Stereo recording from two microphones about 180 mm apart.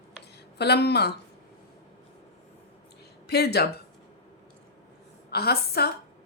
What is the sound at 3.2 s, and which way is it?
Speech, 65° left (ahead or behind).